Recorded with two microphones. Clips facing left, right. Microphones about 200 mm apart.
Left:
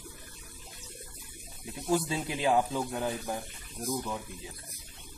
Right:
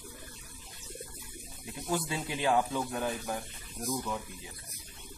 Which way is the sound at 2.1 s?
20° left (ahead or behind).